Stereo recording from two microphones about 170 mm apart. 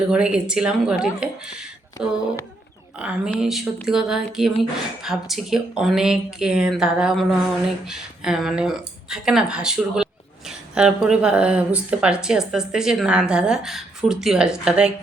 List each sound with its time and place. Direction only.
0.1 s a woman's voice: 5° right (ahead or behind)